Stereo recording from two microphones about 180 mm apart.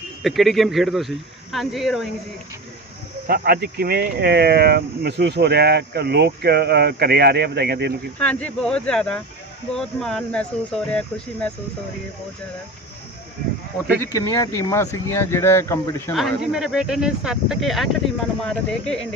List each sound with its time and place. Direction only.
0.2 s speech: centre (ahead or behind)
3.2 s speech: 60° right (ahead or behind)
8.2 s speech: 5° left (ahead or behind)
14.0 s speech: 20° left (ahead or behind)
16.1 s speech: centre (ahead or behind)